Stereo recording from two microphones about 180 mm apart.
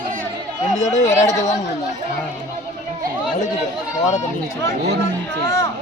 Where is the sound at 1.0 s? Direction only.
20° left (ahead or behind).